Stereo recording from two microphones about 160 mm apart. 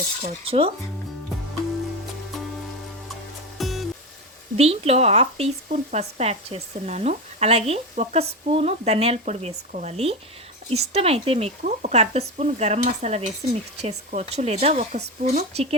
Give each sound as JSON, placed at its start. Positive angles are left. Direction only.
{"t": 0.2, "sound": "speech", "side_deg": -40}
{"t": 3.6, "sound": "music", "side_deg": 0}
{"t": 4.5, "sound": "speech", "side_deg": -40}